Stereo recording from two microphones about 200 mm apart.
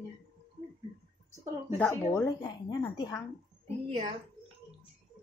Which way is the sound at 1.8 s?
10° left (ahead or behind).